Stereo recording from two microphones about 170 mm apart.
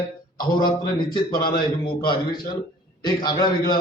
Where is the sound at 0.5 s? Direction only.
25° left (ahead or behind).